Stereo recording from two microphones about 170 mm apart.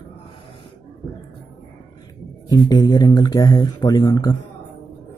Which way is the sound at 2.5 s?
20° left (ahead or behind).